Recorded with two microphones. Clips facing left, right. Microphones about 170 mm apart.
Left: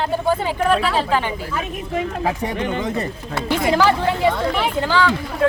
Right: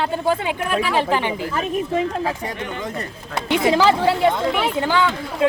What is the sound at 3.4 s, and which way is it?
Speech, 20° right (ahead or behind).